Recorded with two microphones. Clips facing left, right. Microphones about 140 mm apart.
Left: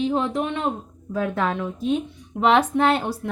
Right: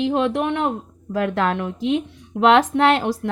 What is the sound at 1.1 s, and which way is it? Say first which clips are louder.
A woman's voice: right 3 dB; 85° right.